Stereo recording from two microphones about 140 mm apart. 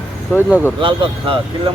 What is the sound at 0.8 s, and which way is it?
Speech, 35° right (ahead or behind).